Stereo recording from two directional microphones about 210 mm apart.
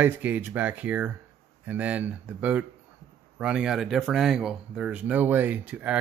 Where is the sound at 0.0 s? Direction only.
10° right (ahead or behind).